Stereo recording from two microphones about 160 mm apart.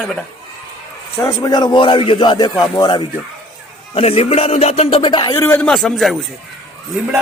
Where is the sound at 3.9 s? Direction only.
40° left (ahead or behind).